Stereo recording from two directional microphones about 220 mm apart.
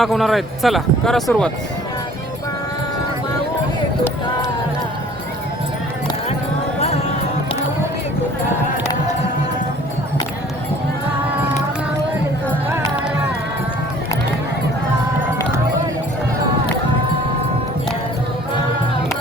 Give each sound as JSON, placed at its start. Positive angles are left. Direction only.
{"t": 0.0, "sound": "speech", "side_deg": 0}
{"t": 6.7, "sound": "music", "side_deg": 30}